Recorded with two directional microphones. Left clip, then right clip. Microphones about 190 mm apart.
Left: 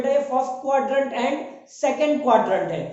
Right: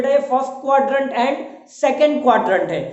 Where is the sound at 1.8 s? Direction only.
25° right (ahead or behind).